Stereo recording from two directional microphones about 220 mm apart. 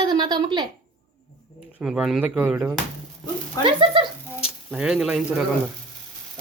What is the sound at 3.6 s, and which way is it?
Speech, 25° right (ahead or behind).